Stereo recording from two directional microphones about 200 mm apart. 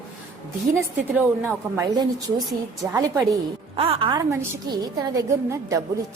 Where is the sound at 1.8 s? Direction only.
20° right (ahead or behind).